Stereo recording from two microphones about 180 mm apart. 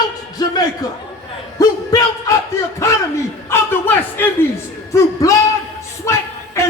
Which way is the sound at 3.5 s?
10° left (ahead or behind).